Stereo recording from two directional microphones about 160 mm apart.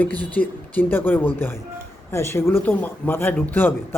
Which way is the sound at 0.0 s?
10° left (ahead or behind).